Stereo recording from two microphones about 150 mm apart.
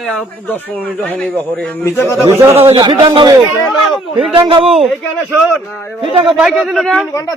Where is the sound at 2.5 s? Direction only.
35° right (ahead or behind).